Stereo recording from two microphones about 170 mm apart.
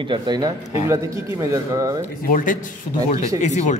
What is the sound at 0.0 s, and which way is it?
Speech, 25° right (ahead or behind).